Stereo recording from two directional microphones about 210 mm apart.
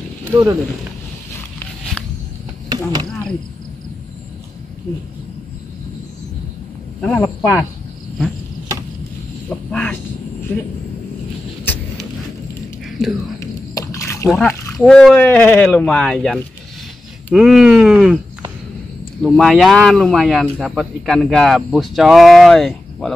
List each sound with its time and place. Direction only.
2.7 s speech: 20° right (ahead or behind)
7.0 s speech: 5° left (ahead or behind)
9.7 s speech: 5° left (ahead or behind)
11.6 s vehicle: 10° left (ahead or behind)
13.4 s dog: 15° left (ahead or behind)
14.7 s speech: centre (ahead or behind)
19.2 s speech: centre (ahead or behind)